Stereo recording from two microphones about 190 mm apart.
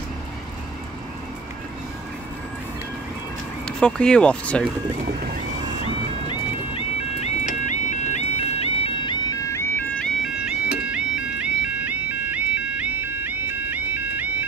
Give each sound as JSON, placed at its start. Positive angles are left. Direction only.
{"t": 3.6, "sound": "speech", "side_deg": 5}
{"t": 5.9, "sound": "music", "side_deg": 25}